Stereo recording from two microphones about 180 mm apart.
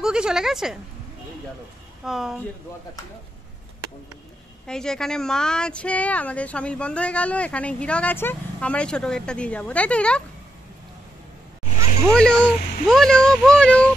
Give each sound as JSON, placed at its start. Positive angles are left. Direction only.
{"t": 0.0, "sound": "a child's voice", "side_deg": -5}
{"t": 2.0, "sound": "a child's voice", "side_deg": 0}
{"t": 4.6, "sound": "speech", "side_deg": 5}
{"t": 11.6, "sound": "a sound", "side_deg": 40}
{"t": 12.1, "sound": "a child's voice", "side_deg": 5}